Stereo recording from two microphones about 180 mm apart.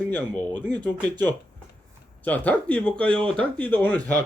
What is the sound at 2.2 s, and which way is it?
A man's voice, 10° left (ahead or behind).